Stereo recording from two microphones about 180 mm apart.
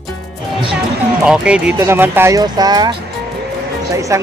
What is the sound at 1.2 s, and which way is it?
Speech, 5° right (ahead or behind).